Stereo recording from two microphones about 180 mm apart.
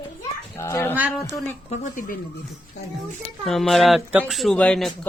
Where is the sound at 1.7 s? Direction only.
50° left (ahead or behind).